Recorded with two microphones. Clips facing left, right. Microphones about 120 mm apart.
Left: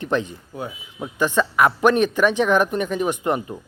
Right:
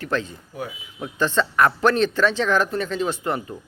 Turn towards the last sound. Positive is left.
turn(degrees=20)  # may be behind; listen again after turning